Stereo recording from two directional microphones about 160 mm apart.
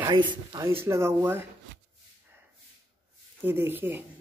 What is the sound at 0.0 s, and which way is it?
Speech, 30° right (ahead or behind).